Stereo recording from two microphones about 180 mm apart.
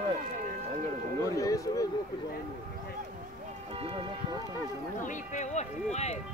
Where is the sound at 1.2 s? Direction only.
20° left (ahead or behind).